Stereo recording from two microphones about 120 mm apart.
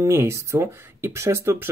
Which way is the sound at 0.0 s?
25° right (ahead or behind).